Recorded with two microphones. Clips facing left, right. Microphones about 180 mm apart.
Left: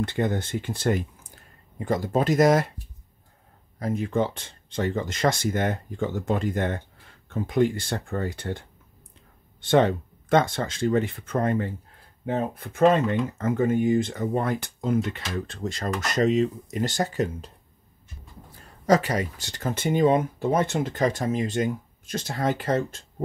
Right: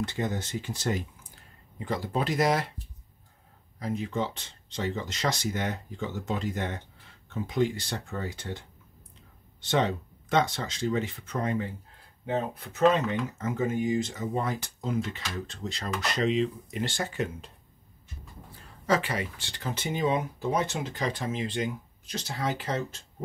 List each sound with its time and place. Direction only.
0.0 s speech: 55° left (ahead or behind)
3.8 s speech: 50° left (ahead or behind)
18.9 s speech: 40° left (ahead or behind)